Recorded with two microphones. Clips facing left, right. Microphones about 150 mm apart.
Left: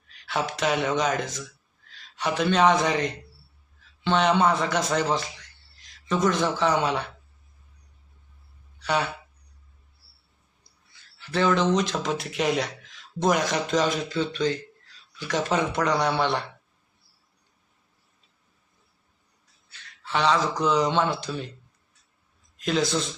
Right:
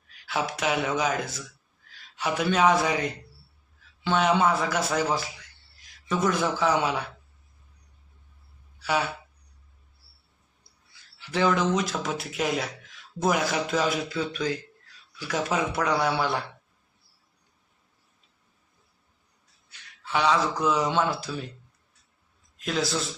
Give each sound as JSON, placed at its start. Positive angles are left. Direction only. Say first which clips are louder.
{"t": 0.3, "sound": "a man's voice", "louder": "left 2 dB", "side_deg": -5}
{"t": 8.8, "sound": "speech", "louder": "left 1 dB", "side_deg": -5}
{"t": 11.2, "sound": "speech", "louder": "left 1 dB", "side_deg": -10}
{"t": 19.7, "sound": "a sound", "louder": "even", "side_deg": -10}
{"t": 20.6, "sound": "speech", "louder": "left 2 dB", "side_deg": -5}
{"t": 22.5, "sound": "a man's voice", "louder": "left 3 dB", "side_deg": 0}